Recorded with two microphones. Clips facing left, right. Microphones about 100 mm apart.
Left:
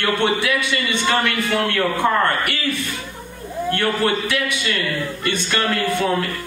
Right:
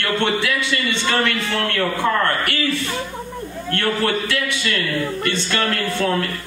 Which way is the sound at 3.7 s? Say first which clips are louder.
Even; 20° left (ahead or behind).